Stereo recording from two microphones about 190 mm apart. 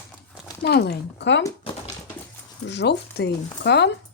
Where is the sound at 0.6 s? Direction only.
55° left (ahead or behind).